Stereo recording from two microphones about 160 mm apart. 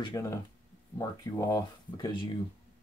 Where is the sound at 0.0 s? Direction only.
20° left (ahead or behind).